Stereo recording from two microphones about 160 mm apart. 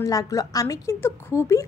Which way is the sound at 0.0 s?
20° left (ahead or behind).